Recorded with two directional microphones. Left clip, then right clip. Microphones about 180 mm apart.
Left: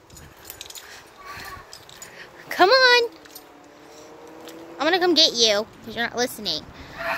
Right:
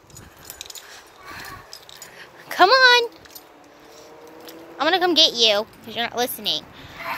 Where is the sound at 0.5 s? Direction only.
50° right (ahead or behind).